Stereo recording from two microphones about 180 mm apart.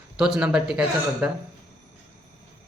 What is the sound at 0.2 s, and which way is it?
Speech, 5° right (ahead or behind).